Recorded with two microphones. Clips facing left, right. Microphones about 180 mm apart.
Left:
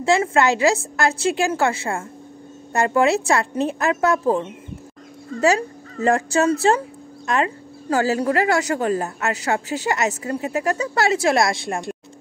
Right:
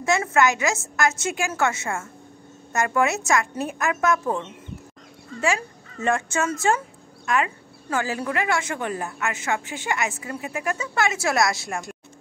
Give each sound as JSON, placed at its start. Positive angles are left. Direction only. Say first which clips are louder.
{"t": 0.0, "sound": "speech", "louder": "left 3 dB", "side_deg": 30}
{"t": 5.4, "sound": "a woman's voice", "louder": "left 6 dB", "side_deg": 35}